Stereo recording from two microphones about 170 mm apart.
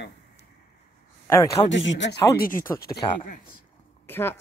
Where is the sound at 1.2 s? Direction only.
15° left (ahead or behind).